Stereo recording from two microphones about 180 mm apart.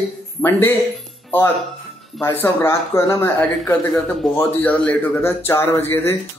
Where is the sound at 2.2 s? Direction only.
15° left (ahead or behind).